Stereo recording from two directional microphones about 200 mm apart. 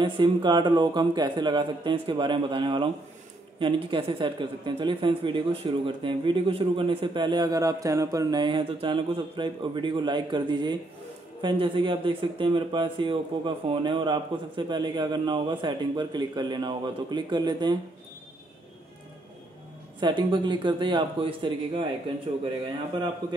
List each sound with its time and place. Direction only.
0.0 s speech: 25° right (ahead or behind)
20.0 s speech: 25° right (ahead or behind)
23.2 s speech: 20° right (ahead or behind)